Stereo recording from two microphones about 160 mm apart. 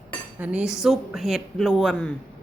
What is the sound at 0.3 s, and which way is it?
Speech, 10° right (ahead or behind).